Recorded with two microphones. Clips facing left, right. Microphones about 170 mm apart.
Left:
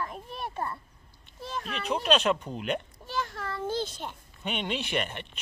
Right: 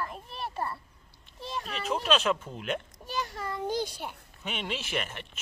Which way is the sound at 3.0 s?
15° right (ahead or behind).